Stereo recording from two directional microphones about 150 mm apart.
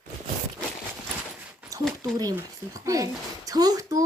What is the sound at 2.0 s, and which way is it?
Speech, 25° right (ahead or behind).